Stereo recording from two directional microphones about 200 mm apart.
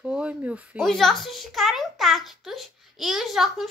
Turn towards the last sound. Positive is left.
turn(degrees=0)  # may be behind; listen again after turning